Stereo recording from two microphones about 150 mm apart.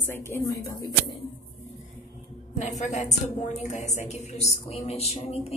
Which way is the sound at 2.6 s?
55° left (ahead or behind).